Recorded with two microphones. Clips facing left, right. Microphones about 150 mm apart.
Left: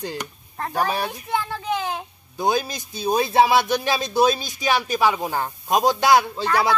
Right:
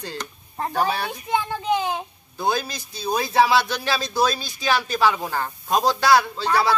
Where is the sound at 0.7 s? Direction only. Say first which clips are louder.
Even; 15° left (ahead or behind).